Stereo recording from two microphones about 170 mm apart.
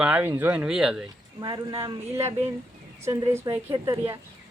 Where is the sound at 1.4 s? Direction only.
25° right (ahead or behind).